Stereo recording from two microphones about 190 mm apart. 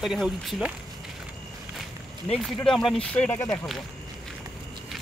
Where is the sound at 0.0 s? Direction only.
Centre (ahead or behind).